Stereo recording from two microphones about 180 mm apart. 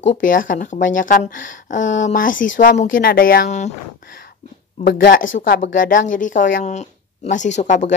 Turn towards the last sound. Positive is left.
turn(degrees=40)  # may be behind; listen again after turning